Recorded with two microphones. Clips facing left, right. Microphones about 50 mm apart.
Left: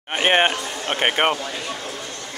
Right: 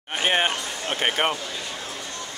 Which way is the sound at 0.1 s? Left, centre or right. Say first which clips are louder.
Left 5 dB; left.